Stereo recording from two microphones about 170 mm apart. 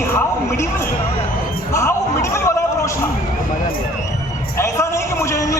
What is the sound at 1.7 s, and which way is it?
Music, 15° left (ahead or behind).